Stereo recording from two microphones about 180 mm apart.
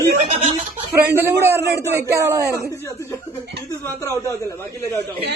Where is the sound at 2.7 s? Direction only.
15° left (ahead or behind).